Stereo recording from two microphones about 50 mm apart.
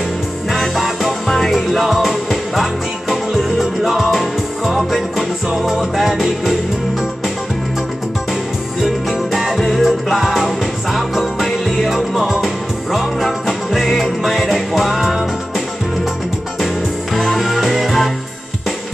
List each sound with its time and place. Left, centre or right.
0.5 s music: centre
8.8 s music: centre
17.1 s music: centre